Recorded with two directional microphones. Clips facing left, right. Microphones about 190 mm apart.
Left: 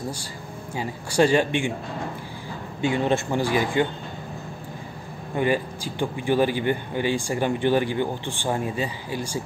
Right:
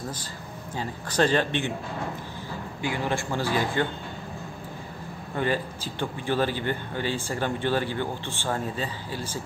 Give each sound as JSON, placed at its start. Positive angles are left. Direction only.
{"t": 0.7, "sound": "a man's voice", "side_deg": 10}
{"t": 2.8, "sound": "a man's voice", "side_deg": 25}
{"t": 5.3, "sound": "a man's voice", "side_deg": 15}